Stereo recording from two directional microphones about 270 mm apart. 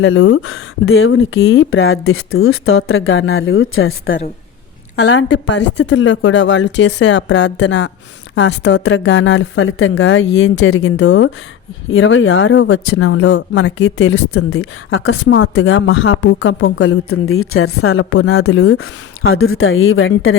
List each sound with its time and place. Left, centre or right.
0.0 s a woman's voice: left